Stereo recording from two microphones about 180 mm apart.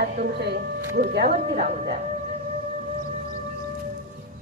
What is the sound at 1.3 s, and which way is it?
Speech, 40° right (ahead or behind).